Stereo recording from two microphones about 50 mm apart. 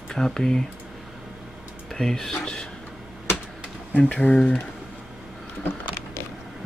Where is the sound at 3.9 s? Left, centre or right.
Left.